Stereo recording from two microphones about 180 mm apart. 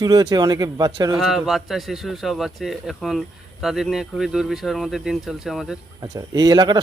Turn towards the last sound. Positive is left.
turn(degrees=-20)  # may be behind; listen again after turning